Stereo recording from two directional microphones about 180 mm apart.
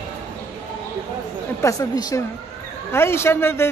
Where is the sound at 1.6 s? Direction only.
20° left (ahead or behind).